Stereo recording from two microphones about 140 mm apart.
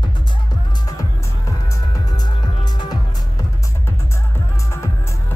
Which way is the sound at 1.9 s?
30° left (ahead or behind).